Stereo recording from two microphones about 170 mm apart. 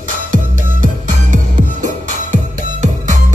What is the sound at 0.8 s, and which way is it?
Music, 50° right (ahead or behind).